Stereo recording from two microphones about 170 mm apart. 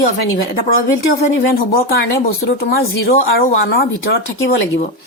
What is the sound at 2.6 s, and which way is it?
Speech, 65° left (ahead or behind).